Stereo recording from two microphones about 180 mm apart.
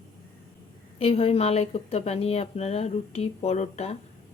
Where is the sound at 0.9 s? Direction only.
30° left (ahead or behind).